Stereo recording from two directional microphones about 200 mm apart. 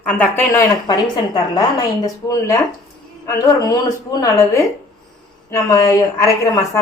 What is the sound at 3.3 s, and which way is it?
A woman's voice, 15° left (ahead or behind).